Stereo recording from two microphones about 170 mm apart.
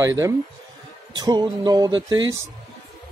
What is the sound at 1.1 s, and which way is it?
Speech, 25° right (ahead or behind).